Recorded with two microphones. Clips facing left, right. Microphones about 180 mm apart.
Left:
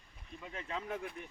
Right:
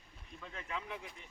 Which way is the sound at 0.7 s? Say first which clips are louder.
Left 4 dB; 45° left (ahead or behind).